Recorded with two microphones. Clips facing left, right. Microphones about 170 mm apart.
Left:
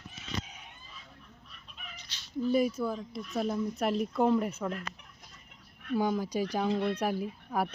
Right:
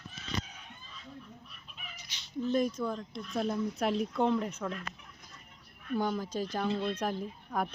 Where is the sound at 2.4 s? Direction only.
10° left (ahead or behind).